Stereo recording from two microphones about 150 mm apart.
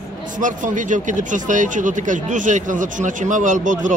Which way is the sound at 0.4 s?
60° right (ahead or behind).